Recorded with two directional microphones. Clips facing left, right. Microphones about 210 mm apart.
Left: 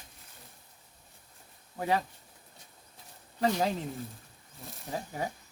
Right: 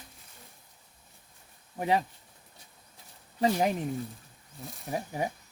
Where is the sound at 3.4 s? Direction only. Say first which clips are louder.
Right 2 dB; 20° right (ahead or behind).